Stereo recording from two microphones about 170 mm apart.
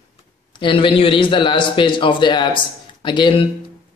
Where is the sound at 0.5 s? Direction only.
30° left (ahead or behind).